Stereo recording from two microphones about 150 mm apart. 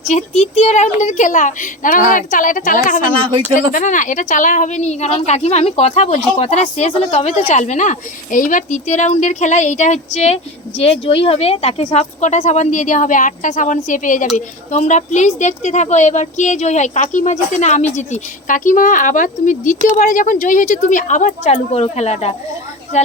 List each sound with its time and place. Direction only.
0.1 s a woman's voice: 50° left (ahead or behind)
3.2 s speech: 35° right (ahead or behind)
3.7 s a woman's voice: 60° left (ahead or behind); by 23.1 s 45° left (ahead or behind)